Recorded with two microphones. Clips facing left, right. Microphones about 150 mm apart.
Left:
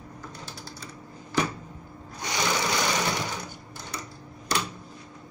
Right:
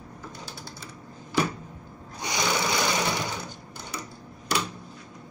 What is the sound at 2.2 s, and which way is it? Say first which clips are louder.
Sewing machine: even; 10° right (ahead or behind).